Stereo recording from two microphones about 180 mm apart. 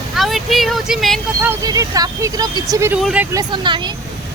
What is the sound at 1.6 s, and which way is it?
Speech, 20° right (ahead or behind).